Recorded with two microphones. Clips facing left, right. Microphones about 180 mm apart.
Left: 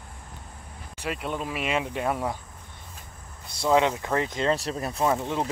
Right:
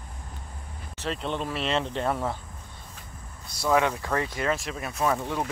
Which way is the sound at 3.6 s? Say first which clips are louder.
Left 2 dB; 20° left (ahead or behind).